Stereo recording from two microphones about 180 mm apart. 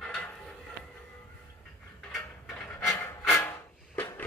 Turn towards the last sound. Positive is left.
turn(degrees=10)  # may be behind; listen again after turning